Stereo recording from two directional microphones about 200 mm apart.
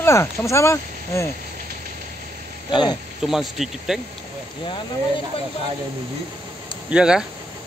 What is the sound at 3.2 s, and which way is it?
Speech, centre (ahead or behind).